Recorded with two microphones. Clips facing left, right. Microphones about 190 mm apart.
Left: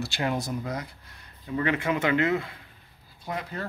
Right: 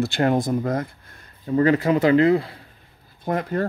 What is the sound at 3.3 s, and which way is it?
Speech, 50° right (ahead or behind).